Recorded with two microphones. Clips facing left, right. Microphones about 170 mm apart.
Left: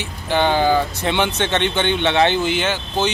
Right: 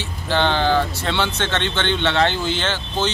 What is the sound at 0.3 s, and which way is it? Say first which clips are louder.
Speech: left 2 dB; 10° left (ahead or behind).